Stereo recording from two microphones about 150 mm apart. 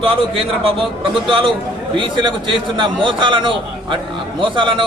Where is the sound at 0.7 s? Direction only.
35° right (ahead or behind).